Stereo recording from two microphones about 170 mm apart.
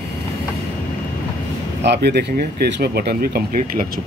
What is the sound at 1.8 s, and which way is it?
Speech, 85° right.